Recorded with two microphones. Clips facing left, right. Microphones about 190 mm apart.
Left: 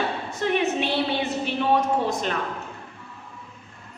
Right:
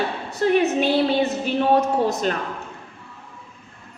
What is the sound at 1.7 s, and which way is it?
Speech, 40° right (ahead or behind).